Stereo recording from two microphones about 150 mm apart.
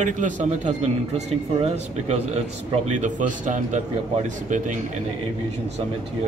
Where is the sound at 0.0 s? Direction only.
55° right (ahead or behind).